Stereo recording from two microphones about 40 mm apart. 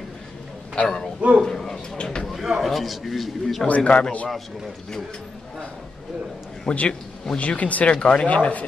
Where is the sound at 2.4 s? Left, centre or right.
Centre.